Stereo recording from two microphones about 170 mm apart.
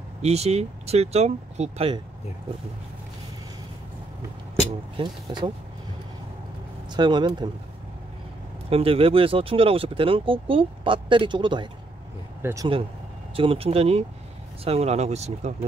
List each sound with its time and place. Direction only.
0.2 s speech: 40° right (ahead or behind)
4.9 s speech: 25° right (ahead or behind)
6.9 s speech: 25° right (ahead or behind)
8.6 s speech: 35° right (ahead or behind)
12.4 s speech: 15° right (ahead or behind)
13.4 s speech: 35° right (ahead or behind)